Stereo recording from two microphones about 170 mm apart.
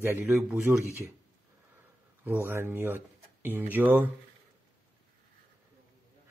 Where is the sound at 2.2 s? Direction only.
10° right (ahead or behind).